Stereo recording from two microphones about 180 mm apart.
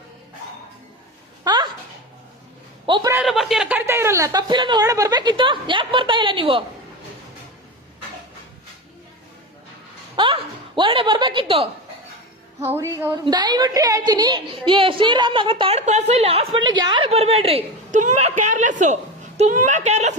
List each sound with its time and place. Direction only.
2.8 s a man's voice: 25° right (ahead or behind)
3.2 s a woman's voice: centre (ahead or behind); by 6.7 s 30° right (ahead or behind)
10.2 s a sound: 25° right (ahead or behind)
12.6 s a woman's voice: 15° right (ahead or behind); by 20.1 s 40° right (ahead or behind)